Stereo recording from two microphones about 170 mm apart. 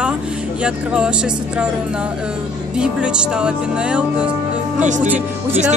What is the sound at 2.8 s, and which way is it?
Music, 5° right (ahead or behind).